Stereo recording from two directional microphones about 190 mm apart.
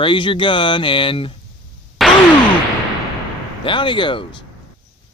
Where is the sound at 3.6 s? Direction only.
25° left (ahead or behind).